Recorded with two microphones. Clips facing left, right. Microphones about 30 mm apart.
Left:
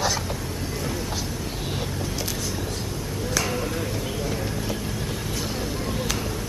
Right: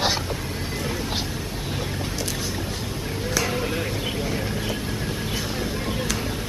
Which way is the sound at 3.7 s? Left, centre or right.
Right.